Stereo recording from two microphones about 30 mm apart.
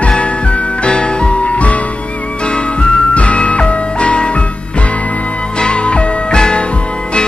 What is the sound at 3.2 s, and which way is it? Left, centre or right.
Music, left.